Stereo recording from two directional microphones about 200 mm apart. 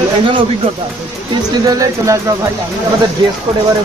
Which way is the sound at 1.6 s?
15° right (ahead or behind).